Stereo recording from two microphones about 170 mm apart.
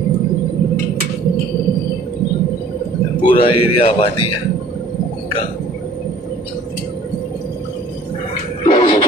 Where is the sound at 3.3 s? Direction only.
35° left (ahead or behind).